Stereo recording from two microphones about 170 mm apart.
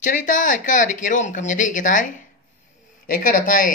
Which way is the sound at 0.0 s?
50° left (ahead or behind).